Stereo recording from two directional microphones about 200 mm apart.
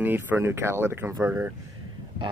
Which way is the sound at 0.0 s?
10° right (ahead or behind).